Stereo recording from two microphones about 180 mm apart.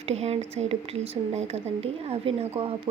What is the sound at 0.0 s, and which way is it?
Speech, 35° right (ahead or behind).